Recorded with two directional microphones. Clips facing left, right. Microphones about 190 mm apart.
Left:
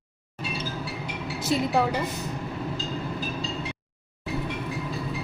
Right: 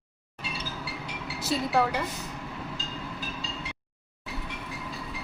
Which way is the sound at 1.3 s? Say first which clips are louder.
Left 2 dB; 20° left (ahead or behind).